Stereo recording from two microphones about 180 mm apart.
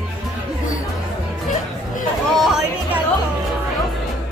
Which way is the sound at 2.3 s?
Centre (ahead or behind).